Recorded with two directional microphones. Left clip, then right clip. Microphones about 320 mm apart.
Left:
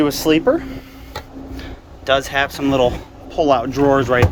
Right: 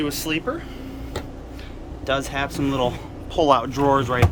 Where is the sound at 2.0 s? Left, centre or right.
Centre.